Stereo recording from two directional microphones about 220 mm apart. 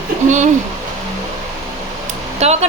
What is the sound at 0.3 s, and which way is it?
Speech, 35° right (ahead or behind).